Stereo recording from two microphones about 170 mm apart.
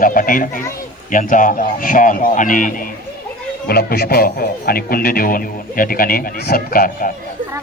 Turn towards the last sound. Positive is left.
turn(degrees=55)  # may be behind; listen again after turning